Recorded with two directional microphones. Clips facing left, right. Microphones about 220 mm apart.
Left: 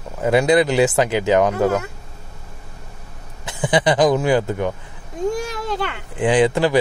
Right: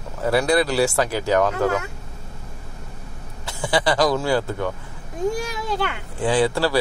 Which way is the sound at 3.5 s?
20° left (ahead or behind).